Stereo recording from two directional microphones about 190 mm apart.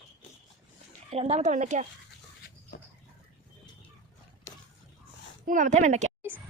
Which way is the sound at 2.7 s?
55° left (ahead or behind).